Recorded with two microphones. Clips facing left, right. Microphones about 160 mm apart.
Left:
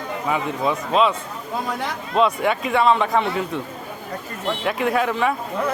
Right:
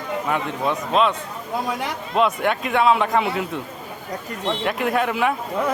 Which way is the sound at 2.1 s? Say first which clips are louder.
Left 1 dB; centre (ahead or behind).